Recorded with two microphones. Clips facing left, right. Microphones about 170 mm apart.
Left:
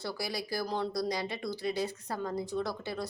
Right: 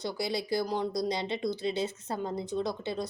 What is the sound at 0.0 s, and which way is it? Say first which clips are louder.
Speech: right 4 dB; 20° right (ahead or behind).